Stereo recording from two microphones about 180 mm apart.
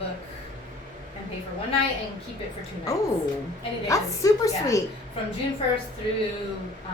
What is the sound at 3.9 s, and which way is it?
Speech, 15° left (ahead or behind).